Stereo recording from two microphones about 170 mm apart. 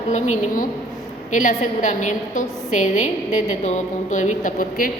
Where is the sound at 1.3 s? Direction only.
45° left (ahead or behind).